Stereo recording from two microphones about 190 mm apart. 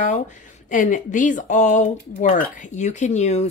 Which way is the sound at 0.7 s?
45° left (ahead or behind).